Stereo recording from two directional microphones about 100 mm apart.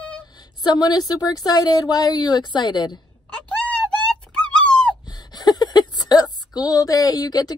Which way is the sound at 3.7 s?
15° left (ahead or behind).